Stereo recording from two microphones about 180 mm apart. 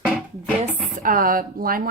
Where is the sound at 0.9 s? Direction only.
50° right (ahead or behind).